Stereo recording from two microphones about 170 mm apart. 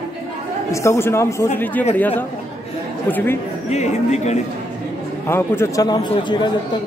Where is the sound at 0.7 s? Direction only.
15° left (ahead or behind).